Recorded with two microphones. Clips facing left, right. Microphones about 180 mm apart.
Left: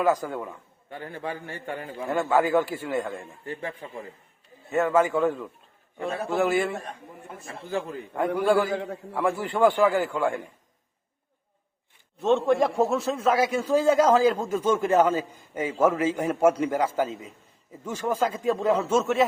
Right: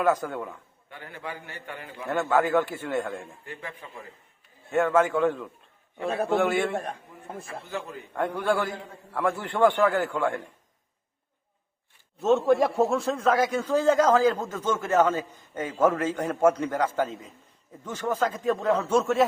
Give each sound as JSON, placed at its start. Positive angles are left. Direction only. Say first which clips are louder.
{"t": 0.0, "sound": "a man's voice", "louder": "left 1 dB", "side_deg": 5}
{"t": 0.9, "sound": "a man's voice", "louder": "left 5 dB", "side_deg": 35}
{"t": 2.0, "sound": "a man's voice", "louder": "left 1 dB", "side_deg": 10}
{"t": 3.6, "sound": "a man's voice", "louder": "left 5 dB", "side_deg": 25}
{"t": 4.7, "sound": "a man's voice", "louder": "even", "side_deg": 5}
{"t": 8.4, "sound": "a man's voice", "louder": "left 4 dB", "side_deg": 10}
{"t": 8.7, "sound": "a man's voice", "louder": "left 10 dB", "side_deg": 80}
{"t": 9.1, "sound": "a man's voice", "louder": "left 1 dB", "side_deg": 10}
{"t": 12.2, "sound": "a man's voice", "louder": "even", "side_deg": 0}